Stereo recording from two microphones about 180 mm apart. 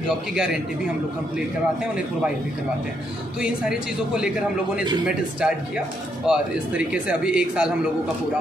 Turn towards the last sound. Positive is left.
turn(degrees=-5)  # may be behind; listen again after turning